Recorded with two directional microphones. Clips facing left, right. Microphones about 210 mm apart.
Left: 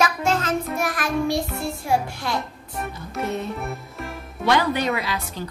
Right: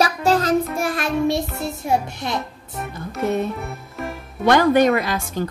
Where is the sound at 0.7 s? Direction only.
25° right (ahead or behind).